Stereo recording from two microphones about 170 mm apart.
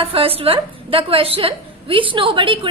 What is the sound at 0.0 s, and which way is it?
A woman's voice, 35° right (ahead or behind).